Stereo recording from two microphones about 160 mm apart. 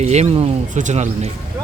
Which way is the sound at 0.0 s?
45° right (ahead or behind).